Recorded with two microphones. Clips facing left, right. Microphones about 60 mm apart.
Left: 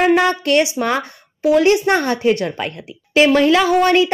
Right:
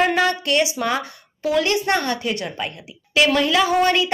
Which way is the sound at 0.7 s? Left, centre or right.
Left.